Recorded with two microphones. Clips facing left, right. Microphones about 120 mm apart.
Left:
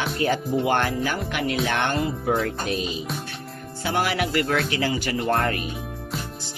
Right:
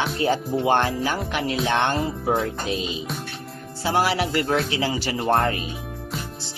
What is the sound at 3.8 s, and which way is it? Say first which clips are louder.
Speech: right 2 dB; 30° right (ahead or behind).